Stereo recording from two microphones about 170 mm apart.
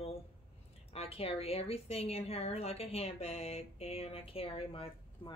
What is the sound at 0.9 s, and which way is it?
A woman's voice, 35° left (ahead or behind).